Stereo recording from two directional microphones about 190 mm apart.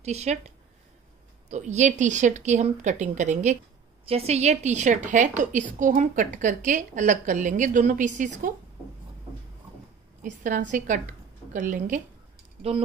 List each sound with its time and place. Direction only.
0.0 s a woman's voice: 35° right (ahead or behind)
1.5 s a woman's voice: 35° right (ahead or behind)
10.2 s a woman's voice: 40° right (ahead or behind)